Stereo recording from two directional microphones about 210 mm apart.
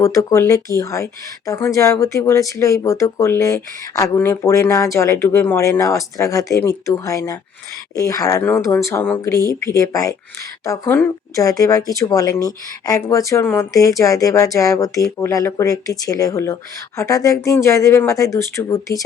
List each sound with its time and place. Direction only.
0.0 s speech: 15° left (ahead or behind)